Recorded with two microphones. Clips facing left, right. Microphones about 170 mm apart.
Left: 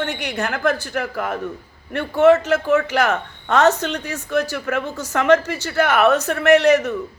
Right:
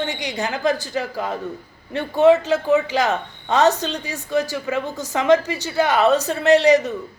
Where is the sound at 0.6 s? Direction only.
15° right (ahead or behind).